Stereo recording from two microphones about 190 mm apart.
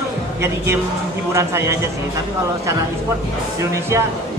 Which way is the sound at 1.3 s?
15° right (ahead or behind).